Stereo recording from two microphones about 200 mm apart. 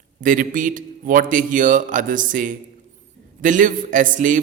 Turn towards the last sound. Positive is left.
turn(degrees=-40)  # may be behind; listen again after turning